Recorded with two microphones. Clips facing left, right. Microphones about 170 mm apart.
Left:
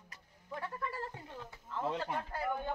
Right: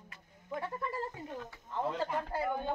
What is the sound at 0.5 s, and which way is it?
Speech, 20° right (ahead or behind).